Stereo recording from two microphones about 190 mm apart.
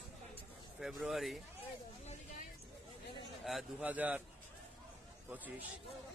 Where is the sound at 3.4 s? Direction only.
Centre (ahead or behind).